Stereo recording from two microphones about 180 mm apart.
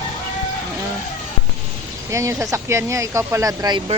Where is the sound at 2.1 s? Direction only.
15° right (ahead or behind).